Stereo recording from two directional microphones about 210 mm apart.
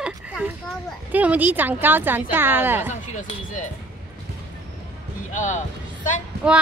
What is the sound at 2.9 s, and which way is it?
Speech, 35° left (ahead or behind).